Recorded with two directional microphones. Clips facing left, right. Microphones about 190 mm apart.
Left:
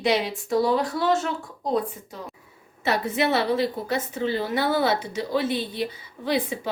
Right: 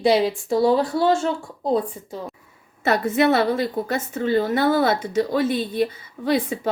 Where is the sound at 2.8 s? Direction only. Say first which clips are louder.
Right 5 dB; 50° right (ahead or behind).